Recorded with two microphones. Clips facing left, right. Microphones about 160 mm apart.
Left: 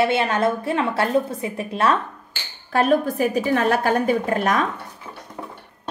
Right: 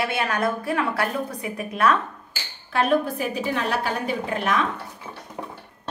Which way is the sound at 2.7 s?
45° left (ahead or behind).